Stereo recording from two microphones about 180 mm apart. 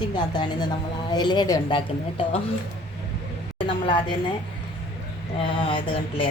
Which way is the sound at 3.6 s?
30° left (ahead or behind).